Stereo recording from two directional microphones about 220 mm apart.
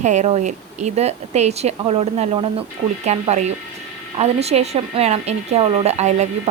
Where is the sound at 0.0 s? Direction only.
30° right (ahead or behind).